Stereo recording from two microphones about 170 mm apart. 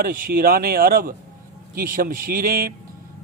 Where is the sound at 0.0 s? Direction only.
55° right (ahead or behind).